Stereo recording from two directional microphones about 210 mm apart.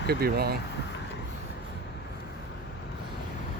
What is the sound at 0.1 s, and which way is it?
Speech, 50° right (ahead or behind).